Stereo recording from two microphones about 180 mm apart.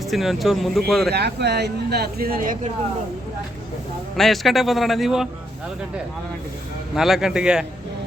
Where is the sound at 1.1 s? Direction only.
65° right (ahead or behind); by 2.6 s 50° right (ahead or behind).